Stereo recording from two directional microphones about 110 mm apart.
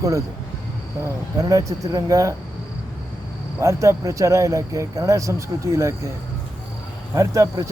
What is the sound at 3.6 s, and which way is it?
Speech, 25° right (ahead or behind).